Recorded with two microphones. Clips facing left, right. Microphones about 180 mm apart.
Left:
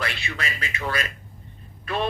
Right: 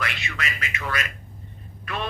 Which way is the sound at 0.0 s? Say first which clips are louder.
Left 1 dB; 30° left (ahead or behind).